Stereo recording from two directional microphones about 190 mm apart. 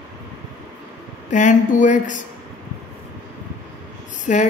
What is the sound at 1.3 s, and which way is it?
Speech, 40° left (ahead or behind).